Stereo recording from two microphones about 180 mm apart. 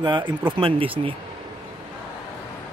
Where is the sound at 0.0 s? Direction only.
25° right (ahead or behind).